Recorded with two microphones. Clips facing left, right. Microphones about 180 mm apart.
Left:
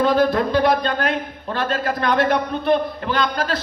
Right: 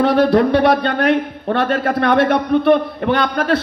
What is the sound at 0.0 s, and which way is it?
A man's voice, 70° right (ahead or behind).